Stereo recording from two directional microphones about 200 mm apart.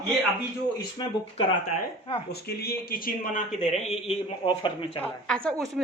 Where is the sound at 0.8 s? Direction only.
25° left (ahead or behind).